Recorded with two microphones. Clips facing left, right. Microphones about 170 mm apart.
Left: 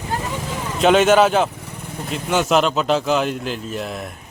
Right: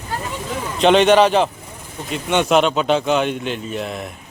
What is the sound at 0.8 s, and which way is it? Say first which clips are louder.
A man's voice: right 1 dB; 5° left (ahead or behind).